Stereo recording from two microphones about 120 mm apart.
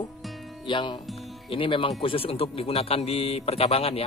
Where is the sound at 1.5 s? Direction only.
45° left (ahead or behind).